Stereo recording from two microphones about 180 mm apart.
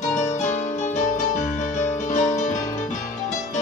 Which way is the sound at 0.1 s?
40° left (ahead or behind).